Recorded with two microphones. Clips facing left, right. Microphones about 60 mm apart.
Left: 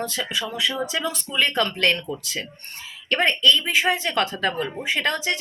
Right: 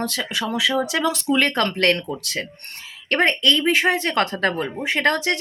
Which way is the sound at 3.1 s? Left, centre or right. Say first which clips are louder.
Right 1 dB; right.